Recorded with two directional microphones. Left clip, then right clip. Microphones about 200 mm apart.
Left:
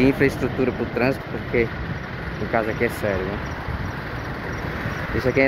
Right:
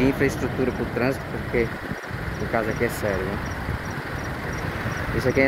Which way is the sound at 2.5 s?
10° left (ahead or behind).